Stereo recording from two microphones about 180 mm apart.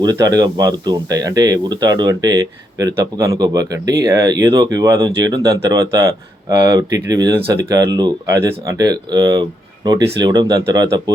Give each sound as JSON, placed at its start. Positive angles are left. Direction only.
{"t": 0.0, "sound": "speech", "side_deg": -20}